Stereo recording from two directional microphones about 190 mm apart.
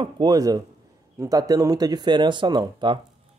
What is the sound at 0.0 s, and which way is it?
Speech, 20° right (ahead or behind).